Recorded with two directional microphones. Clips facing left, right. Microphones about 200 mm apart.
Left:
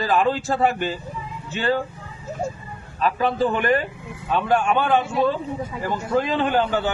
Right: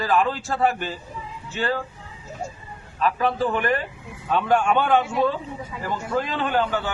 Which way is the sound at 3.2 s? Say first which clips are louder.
Left 3 dB; 30° left (ahead or behind).